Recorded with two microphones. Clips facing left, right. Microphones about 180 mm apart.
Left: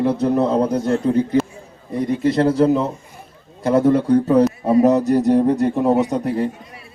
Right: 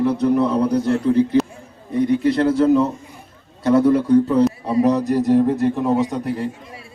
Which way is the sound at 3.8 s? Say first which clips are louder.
Even; 60° left (ahead or behind).